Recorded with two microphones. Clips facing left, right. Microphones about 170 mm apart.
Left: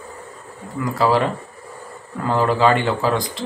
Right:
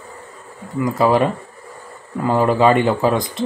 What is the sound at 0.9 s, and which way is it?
Speech, 20° right (ahead or behind).